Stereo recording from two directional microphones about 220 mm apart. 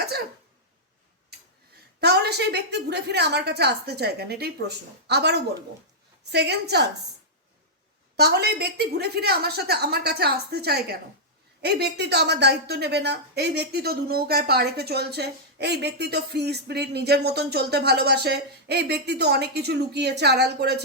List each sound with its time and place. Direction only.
2.0 s a woman's voice: 50° right (ahead or behind)
8.1 s a woman's voice: 45° right (ahead or behind)